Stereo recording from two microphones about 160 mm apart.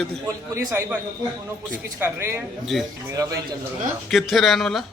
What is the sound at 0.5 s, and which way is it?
Speech, 15° right (ahead or behind).